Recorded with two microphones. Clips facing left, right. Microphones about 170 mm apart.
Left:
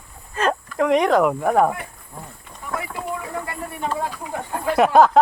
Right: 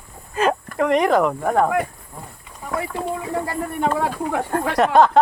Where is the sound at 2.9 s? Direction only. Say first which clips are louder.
Right 4 dB; 30° right (ahead or behind).